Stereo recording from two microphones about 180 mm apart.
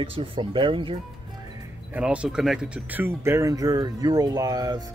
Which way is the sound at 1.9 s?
5° right (ahead or behind).